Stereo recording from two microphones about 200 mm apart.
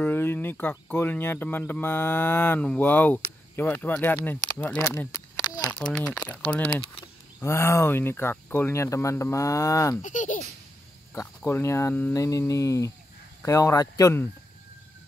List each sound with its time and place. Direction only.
0.0 s speech: 10° left (ahead or behind)
5.8 s speech: 5° left (ahead or behind)
10.0 s speech: 40° left (ahead or behind)
11.1 s speech: 15° left (ahead or behind)